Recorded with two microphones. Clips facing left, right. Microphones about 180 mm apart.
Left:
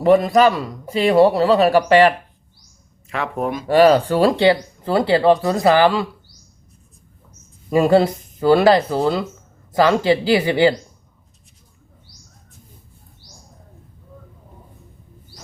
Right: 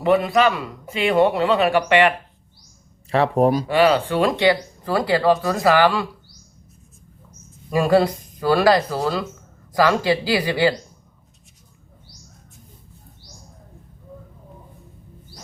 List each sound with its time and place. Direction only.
0.0 s speech: 40° left (ahead or behind)
3.1 s speech: 35° right (ahead or behind)
3.7 s speech: 40° left (ahead or behind); by 6.1 s 25° left (ahead or behind)
7.7 s speech: 25° left (ahead or behind)